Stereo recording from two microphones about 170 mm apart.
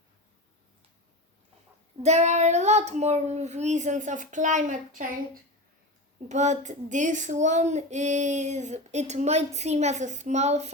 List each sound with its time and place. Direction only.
2.0 s child singing: 40° right (ahead or behind)